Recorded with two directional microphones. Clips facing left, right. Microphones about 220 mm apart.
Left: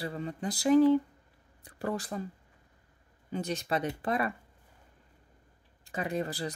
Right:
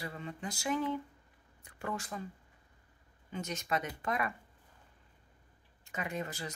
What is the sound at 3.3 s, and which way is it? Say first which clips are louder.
Speech: left 5 dB; 35° left (ahead or behind).